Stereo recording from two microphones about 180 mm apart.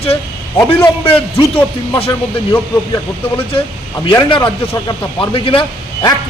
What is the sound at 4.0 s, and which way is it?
A man's voice, 25° left (ahead or behind).